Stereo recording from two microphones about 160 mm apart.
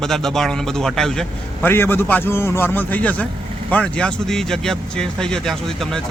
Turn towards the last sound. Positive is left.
turn(degrees=0)  # may be behind; listen again after turning